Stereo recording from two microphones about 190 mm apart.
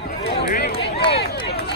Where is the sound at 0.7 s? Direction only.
30° left (ahead or behind).